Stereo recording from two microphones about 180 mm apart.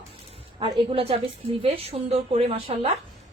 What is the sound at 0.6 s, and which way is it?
Speech, 30° right (ahead or behind).